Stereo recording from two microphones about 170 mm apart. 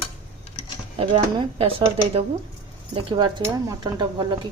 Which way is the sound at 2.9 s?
30° right (ahead or behind).